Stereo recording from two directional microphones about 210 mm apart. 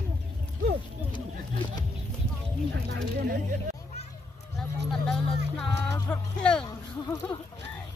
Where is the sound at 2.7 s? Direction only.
60° right (ahead or behind).